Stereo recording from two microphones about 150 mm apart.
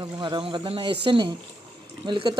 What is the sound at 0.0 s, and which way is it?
A man's voice, 30° right (ahead or behind).